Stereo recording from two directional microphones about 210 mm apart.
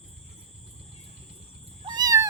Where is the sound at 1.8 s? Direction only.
20° right (ahead or behind).